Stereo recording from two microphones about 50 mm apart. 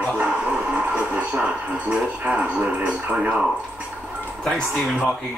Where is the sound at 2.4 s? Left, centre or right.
Right.